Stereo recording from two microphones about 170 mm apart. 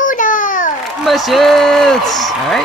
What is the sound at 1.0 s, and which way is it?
A man's voice, centre (ahead or behind).